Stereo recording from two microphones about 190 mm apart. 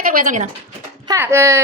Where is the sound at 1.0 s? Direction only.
15° right (ahead or behind).